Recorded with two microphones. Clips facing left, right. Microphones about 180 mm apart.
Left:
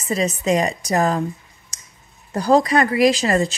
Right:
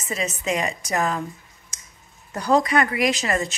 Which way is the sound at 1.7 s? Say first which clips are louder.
Left 2 dB; 35° left (ahead or behind).